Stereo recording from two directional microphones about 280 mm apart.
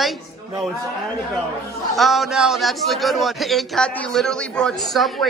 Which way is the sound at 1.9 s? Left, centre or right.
Centre.